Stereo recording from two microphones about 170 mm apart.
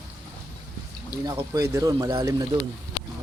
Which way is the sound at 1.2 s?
20° right (ahead or behind).